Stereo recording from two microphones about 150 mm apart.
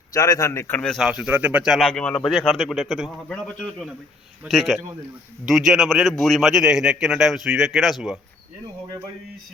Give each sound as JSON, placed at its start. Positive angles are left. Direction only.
{"t": 0.1, "sound": "speech", "side_deg": 20}
{"t": 0.8, "sound": "a man's voice", "side_deg": 0}